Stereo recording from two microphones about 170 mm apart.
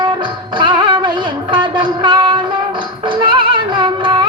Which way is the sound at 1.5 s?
30° right (ahead or behind).